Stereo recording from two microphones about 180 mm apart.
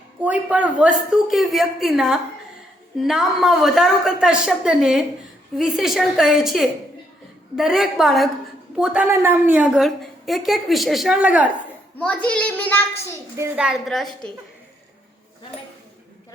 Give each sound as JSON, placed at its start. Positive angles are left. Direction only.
{"t": 0.2, "sound": "a woman's voice", "side_deg": -5}
{"t": 11.9, "sound": "a child's voice", "side_deg": 5}
{"t": 13.3, "sound": "a child's voice", "side_deg": -15}
{"t": 13.7, "sound": "a woman's voice", "side_deg": 0}